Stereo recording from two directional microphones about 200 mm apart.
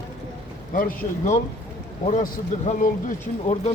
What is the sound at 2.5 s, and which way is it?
Speech, 35° left (ahead or behind).